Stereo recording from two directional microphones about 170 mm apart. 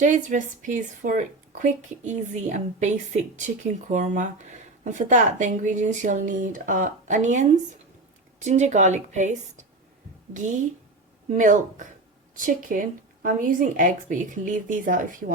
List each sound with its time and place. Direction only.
0.0 s speech: 45° right (ahead or behind)